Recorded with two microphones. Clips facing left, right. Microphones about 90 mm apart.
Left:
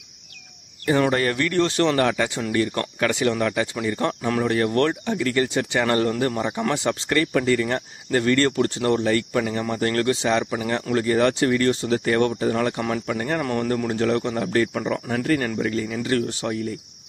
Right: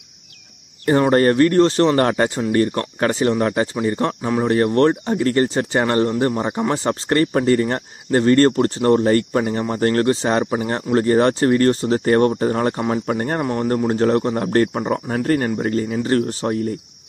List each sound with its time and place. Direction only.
1.1 s speech: 40° right (ahead or behind)
13.4 s speech: 25° right (ahead or behind)
13.8 s speech: 35° right (ahead or behind)